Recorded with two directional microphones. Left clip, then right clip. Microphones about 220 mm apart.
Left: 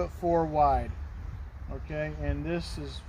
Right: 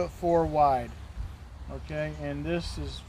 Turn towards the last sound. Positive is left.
turn(degrees=-10)  # may be behind; listen again after turning